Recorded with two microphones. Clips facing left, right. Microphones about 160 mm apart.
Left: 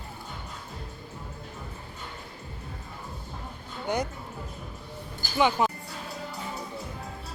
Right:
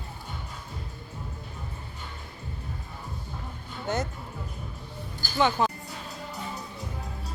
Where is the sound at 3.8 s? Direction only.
15° left (ahead or behind).